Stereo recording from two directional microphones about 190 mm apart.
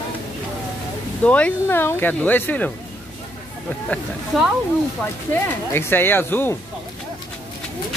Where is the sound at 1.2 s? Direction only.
5° left (ahead or behind).